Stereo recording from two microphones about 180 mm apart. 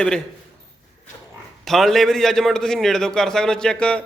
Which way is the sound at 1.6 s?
Centre (ahead or behind).